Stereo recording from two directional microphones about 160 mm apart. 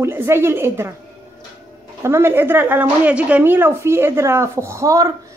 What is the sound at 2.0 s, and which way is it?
A woman's voice, 15° right (ahead or behind).